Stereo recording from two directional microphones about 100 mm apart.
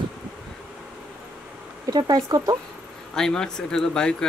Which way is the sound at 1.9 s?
40° right (ahead or behind).